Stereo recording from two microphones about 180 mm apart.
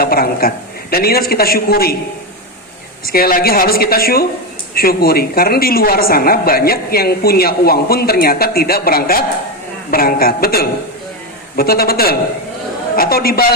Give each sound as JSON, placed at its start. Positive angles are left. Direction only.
{"t": 0.0, "sound": "a man's voice", "side_deg": 55}
{"t": 3.1, "sound": "a woman's voice", "side_deg": 55}